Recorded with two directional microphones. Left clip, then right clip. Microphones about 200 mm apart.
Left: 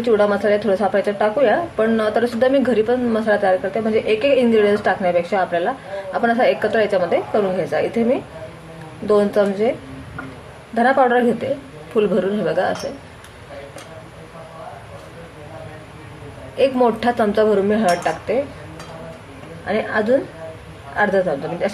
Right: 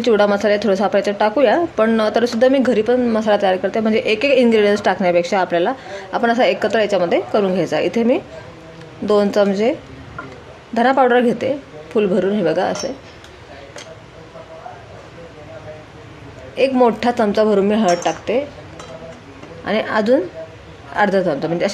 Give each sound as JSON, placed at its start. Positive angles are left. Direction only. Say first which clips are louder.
{"t": 0.0, "sound": "a woman's voice", "louder": "right 2 dB", "side_deg": -35}
{"t": 10.7, "sound": "a woman's voice", "louder": "right 1 dB", "side_deg": -35}
{"t": 16.5, "sound": "speech", "louder": "right 2 dB", "side_deg": -25}
{"t": 19.6, "sound": "a woman's voice", "louder": "right 2 dB", "side_deg": -40}